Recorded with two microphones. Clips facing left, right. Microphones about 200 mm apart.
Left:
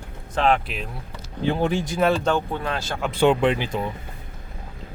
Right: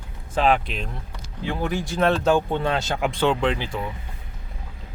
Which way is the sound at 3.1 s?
15° left (ahead or behind).